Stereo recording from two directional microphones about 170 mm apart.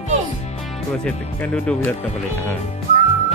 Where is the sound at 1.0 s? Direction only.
10° left (ahead or behind).